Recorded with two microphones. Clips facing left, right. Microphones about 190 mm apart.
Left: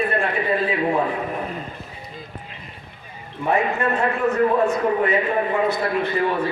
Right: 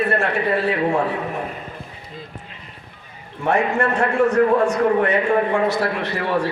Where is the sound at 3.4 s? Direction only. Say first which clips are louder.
Right 2 dB; 80° right.